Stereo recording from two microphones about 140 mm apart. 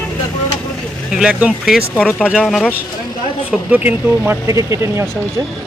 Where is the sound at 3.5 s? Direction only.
10° right (ahead or behind).